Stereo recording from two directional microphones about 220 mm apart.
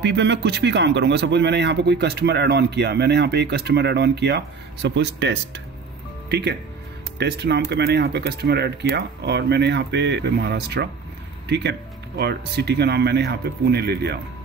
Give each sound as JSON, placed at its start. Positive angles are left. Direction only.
{"t": 0.0, "sound": "speech", "side_deg": -50}